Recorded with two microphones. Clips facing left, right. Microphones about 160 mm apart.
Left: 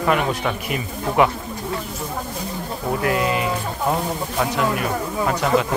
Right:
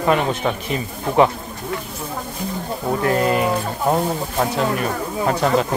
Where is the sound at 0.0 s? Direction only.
25° right (ahead or behind).